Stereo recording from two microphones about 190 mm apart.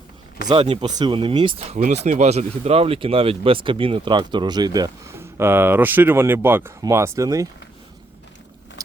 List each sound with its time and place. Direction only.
0.4 s speech: 25° right (ahead or behind)